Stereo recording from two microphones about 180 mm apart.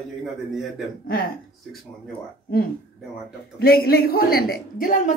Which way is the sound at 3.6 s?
55° left (ahead or behind).